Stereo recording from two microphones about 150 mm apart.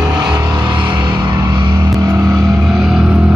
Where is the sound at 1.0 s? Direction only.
30° right (ahead or behind).